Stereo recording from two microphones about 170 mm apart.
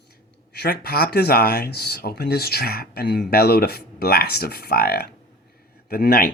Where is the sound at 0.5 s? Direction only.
65° left (ahead or behind).